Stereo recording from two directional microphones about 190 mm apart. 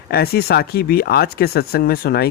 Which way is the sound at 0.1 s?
55° left (ahead or behind).